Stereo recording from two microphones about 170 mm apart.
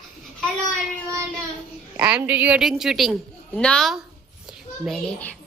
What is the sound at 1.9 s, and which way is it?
A woman's voice, 10° right (ahead or behind).